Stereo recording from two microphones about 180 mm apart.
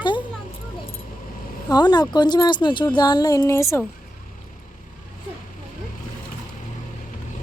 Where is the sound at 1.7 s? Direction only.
25° left (ahead or behind).